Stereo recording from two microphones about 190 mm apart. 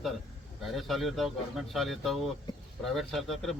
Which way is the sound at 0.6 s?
Centre (ahead or behind).